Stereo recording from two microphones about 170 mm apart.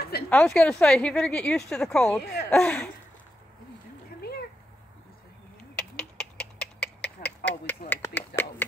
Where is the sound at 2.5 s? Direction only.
5° left (ahead or behind).